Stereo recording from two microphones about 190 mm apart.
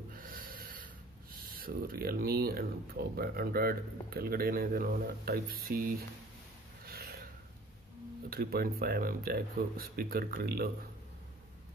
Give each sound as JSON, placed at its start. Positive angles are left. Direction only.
{"t": 0.1, "sound": "snort", "side_deg": -50}
{"t": 1.4, "sound": "speech", "side_deg": -50}
{"t": 6.9, "sound": "a sound", "side_deg": -55}
{"t": 8.3, "sound": "speech", "side_deg": -55}